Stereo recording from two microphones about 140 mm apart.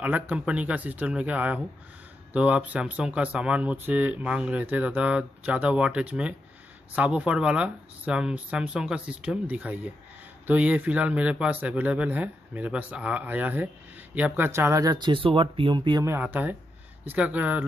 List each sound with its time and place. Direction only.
0.0 s speech: 10° right (ahead or behind); by 16.0 s 35° right (ahead or behind)
16.0 s speech: 15° right (ahead or behind)